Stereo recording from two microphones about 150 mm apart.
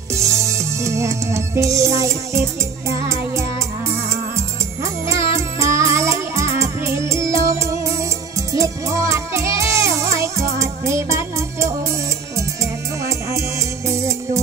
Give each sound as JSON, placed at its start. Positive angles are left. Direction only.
{"t": 0.4, "sound": "music", "side_deg": -20}
{"t": 5.0, "sound": "music", "side_deg": -20}
{"t": 13.8, "sound": "music", "side_deg": -20}